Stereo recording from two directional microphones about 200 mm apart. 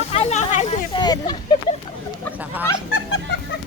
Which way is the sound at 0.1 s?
35° left (ahead or behind).